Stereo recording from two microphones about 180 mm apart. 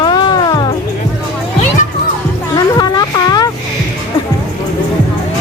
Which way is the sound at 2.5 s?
20° left (ahead or behind).